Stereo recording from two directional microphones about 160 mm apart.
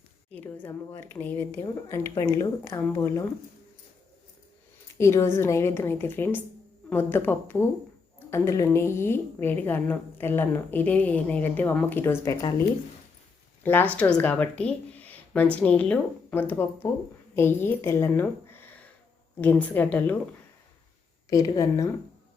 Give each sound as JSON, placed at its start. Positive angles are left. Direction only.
{"t": 0.3, "sound": "a woman's voice", "side_deg": 10}
{"t": 4.9, "sound": "a woman's voice", "side_deg": 20}
{"t": 21.2, "sound": "speech", "side_deg": 20}